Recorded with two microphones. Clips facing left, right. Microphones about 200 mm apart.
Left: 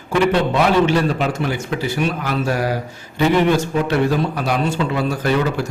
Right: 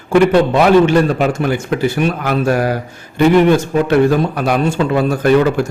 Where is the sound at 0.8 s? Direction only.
50° right (ahead or behind).